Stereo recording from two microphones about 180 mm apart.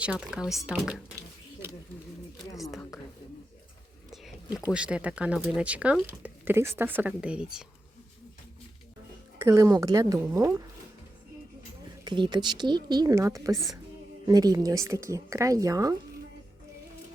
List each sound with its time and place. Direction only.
0.0 s speech: 5° right (ahead or behind)
2.6 s a sound: centre (ahead or behind)
4.1 s speech: centre (ahead or behind)
9.4 s speech: 15° right (ahead or behind)
12.0 s a woman's voice: 25° right (ahead or behind)